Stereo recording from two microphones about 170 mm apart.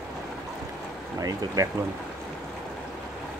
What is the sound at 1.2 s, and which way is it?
Speech, 20° right (ahead or behind).